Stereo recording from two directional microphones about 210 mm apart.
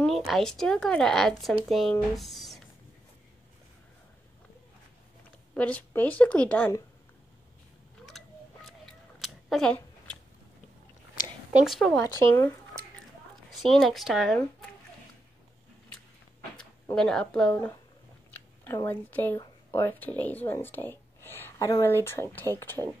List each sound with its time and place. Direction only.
0.0 s speech: centre (ahead or behind)
5.5 s speech: 5° left (ahead or behind)
8.2 s vehicle: centre (ahead or behind)
8.6 s a sound: centre (ahead or behind)
11.5 s speech: centre (ahead or behind)
11.9 s speech: 15° left (ahead or behind)
13.5 s speech: centre (ahead or behind)
16.9 s speech: 5° left (ahead or behind)
18.3 s chewing: 10° left (ahead or behind)
18.9 s speech: 10° left (ahead or behind)